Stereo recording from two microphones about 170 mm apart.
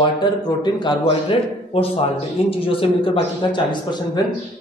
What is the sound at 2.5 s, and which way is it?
Speech, 30° left (ahead or behind).